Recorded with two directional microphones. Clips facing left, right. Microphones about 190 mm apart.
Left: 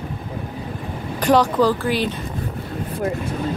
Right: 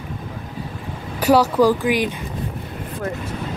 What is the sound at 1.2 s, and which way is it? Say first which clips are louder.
Speech: right 1 dB; 10° right (ahead or behind).